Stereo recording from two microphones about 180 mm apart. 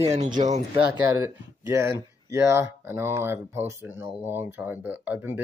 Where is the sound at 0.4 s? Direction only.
40° right (ahead or behind).